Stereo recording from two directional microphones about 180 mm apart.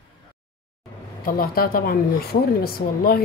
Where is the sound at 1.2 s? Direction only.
55° left (ahead or behind).